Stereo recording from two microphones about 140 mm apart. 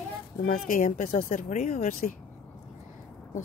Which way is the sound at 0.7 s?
75° left (ahead or behind).